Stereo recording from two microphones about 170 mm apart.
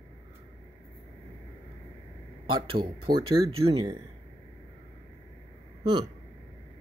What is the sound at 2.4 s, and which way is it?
A man's voice, 30° right (ahead or behind).